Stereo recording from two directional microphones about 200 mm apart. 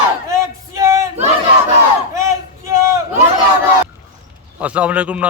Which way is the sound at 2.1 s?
15° right (ahead or behind).